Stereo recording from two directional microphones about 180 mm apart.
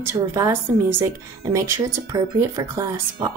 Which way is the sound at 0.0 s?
15° right (ahead or behind).